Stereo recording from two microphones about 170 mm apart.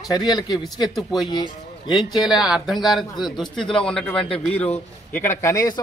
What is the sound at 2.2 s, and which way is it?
A man's voice, 5° right (ahead or behind).